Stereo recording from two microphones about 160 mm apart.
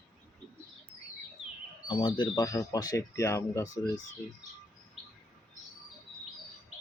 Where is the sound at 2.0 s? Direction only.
30° left (ahead or behind).